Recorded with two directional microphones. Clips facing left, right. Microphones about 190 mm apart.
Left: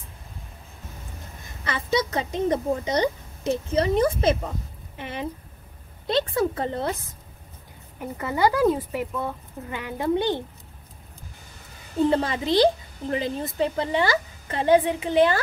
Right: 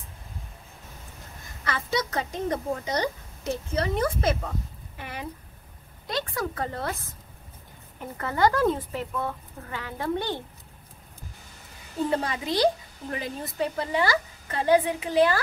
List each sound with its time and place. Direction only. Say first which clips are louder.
1.6 s a woman's voice: left 4 dB; 20° left (ahead or behind)
8.0 s speech: left 1 dB; 15° left (ahead or behind)
12.0 s a woman's voice: left 5 dB; 25° left (ahead or behind)